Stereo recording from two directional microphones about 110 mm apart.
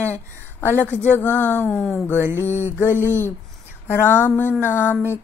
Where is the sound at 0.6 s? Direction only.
20° left (ahead or behind).